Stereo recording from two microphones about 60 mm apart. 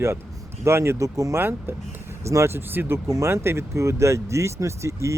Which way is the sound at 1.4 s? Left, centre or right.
Right.